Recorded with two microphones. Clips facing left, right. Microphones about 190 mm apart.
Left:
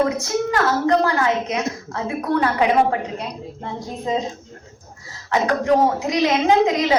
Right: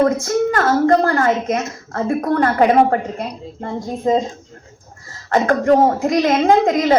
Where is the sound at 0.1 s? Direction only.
50° right (ahead or behind).